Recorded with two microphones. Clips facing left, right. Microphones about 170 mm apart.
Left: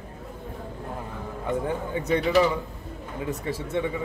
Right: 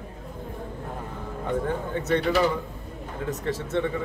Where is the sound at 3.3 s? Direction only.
10° left (ahead or behind).